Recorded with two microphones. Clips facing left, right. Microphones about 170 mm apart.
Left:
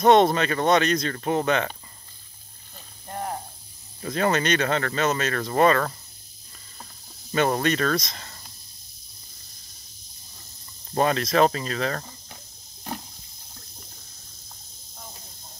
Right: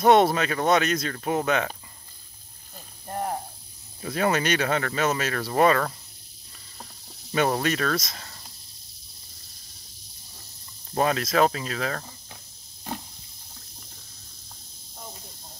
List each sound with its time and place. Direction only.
0.0 s speech: 5° right (ahead or behind)
3.1 s sizzle: 5° right (ahead or behind)
4.0 s speech: 5° right (ahead or behind)
7.3 s speech: 5° right (ahead or behind)
11.0 s speech: 5° right (ahead or behind)